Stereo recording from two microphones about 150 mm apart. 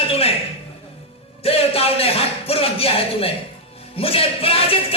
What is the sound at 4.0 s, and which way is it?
Music, 40° left (ahead or behind).